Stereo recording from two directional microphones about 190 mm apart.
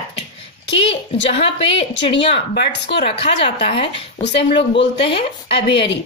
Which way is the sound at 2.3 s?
65° left (ahead or behind).